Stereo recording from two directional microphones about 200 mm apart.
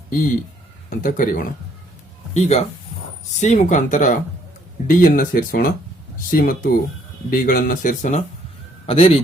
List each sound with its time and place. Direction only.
0.9 s speech: 45° left (ahead or behind)
8.9 s a man's voice: 30° left (ahead or behind)